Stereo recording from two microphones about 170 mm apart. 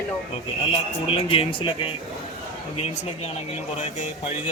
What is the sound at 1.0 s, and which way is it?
Speech, 30° left (ahead or behind).